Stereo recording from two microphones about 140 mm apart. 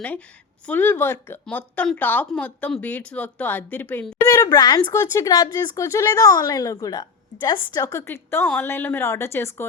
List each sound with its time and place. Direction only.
0.7 s a woman's voice: 15° left (ahead or behind)
4.2 s a woman's voice: 25° left (ahead or behind)